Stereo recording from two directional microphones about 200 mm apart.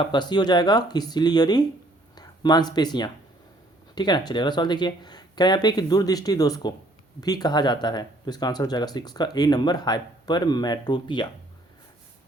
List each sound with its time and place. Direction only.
0.0 s speech: 20° left (ahead or behind)